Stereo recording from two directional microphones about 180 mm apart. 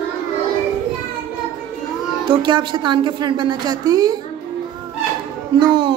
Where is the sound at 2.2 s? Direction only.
25° right (ahead or behind).